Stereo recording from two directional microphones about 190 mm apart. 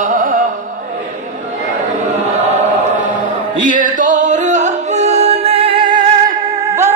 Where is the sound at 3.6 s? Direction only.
45° right (ahead or behind).